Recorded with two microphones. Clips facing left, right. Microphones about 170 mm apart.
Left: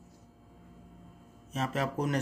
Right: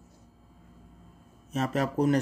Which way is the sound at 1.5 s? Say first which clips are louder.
Right 4 dB; 40° right (ahead or behind).